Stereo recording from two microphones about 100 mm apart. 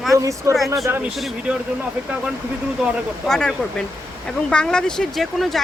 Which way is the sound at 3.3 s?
10° left (ahead or behind).